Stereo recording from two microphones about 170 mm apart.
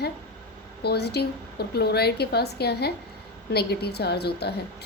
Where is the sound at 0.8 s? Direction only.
70° left (ahead or behind).